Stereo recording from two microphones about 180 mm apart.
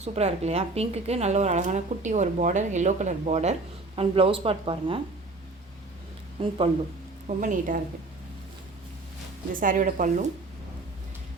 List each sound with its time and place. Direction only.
0.0 s a woman's voice: 35° right (ahead or behind)
6.4 s speech: 30° right (ahead or behind)
7.3 s speech: 45° right (ahead or behind)
9.5 s speech: 50° right (ahead or behind)